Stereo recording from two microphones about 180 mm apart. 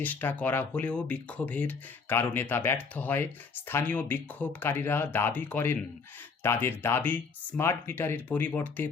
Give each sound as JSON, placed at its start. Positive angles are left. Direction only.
{"t": 0.0, "sound": "speech", "side_deg": 10}